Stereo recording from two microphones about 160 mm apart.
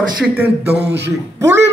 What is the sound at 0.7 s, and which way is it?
Speech, 90° right.